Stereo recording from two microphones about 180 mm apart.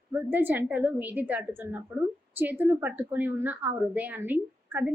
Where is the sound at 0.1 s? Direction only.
10° right (ahead or behind).